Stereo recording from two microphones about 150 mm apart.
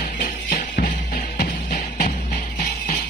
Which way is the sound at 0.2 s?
60° left (ahead or behind).